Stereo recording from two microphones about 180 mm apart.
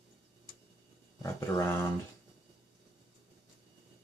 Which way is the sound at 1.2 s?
15° left (ahead or behind).